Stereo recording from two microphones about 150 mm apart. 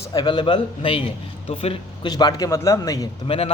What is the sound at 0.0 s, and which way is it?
A man's voice, 30° left (ahead or behind).